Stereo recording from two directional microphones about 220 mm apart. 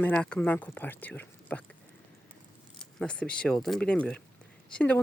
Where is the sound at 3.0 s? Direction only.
5° left (ahead or behind).